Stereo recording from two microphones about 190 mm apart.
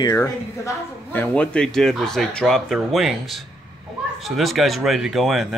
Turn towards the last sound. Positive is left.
turn(degrees=0)  # may be behind; listen again after turning